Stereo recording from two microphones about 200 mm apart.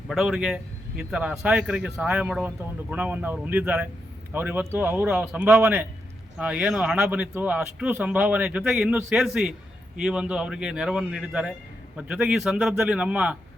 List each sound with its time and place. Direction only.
0.1 s a man's voice: centre (ahead or behind)